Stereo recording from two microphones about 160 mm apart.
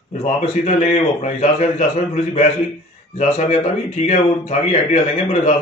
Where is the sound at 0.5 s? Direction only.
45° left (ahead or behind).